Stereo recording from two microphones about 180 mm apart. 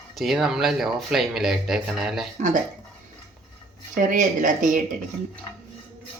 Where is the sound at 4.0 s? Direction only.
45° right (ahead or behind).